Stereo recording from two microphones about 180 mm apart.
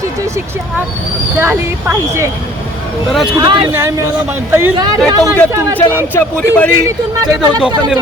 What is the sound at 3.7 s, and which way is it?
Speech, 15° right (ahead or behind).